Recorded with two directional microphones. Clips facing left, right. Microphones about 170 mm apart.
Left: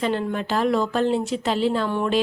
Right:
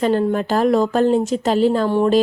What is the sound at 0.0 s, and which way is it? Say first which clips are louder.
A woman's voice: right 7 dB; 40° right (ahead or behind).